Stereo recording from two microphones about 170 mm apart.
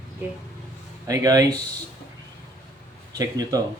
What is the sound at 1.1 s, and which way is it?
Speech, 20° right (ahead or behind).